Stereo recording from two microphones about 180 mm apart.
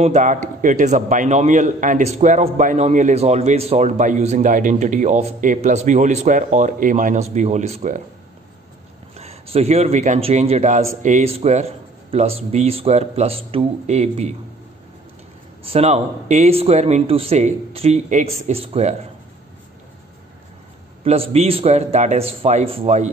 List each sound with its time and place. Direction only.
0.0 s a man's voice: 40° right (ahead or behind)
9.1 s a man's voice: 35° right (ahead or behind)
15.6 s a man's voice: 35° right (ahead or behind)
21.0 s a man's voice: 35° right (ahead or behind)